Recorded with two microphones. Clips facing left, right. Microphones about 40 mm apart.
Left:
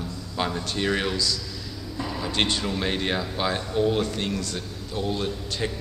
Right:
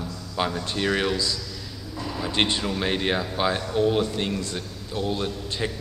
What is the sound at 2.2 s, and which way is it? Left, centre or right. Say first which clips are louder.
Speech: right 2 dB; right.